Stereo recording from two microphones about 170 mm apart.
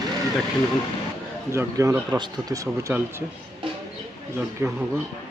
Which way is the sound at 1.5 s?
20° right (ahead or behind).